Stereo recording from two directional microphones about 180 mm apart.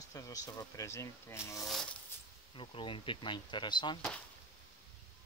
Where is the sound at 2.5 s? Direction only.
30° left (ahead or behind).